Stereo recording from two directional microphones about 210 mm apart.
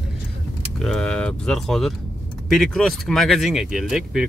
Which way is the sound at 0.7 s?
Centre (ahead or behind).